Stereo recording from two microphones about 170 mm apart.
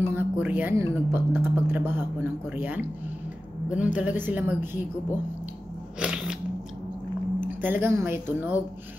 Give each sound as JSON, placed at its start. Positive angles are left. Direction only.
{"t": 0.1, "sound": "speech", "side_deg": -10}
{"t": 5.9, "sound": "scissors", "side_deg": -5}
{"t": 7.3, "sound": "speech", "side_deg": -10}